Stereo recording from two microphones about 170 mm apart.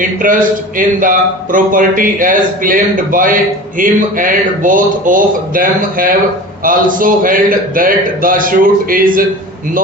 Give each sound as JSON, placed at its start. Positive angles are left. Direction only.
{"t": 0.2, "sound": "a man's voice", "side_deg": -50}